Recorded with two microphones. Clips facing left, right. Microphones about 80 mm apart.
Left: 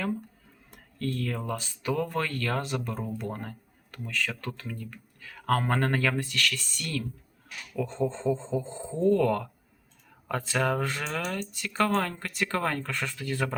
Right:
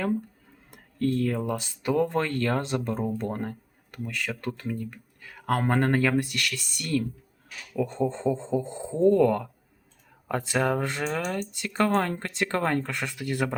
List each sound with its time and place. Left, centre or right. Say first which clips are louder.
0.7 s speech: right 7 dB; right
3.9 s speech: even; right